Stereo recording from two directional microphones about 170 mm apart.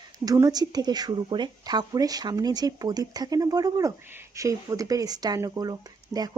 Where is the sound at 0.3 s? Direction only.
20° right (ahead or behind).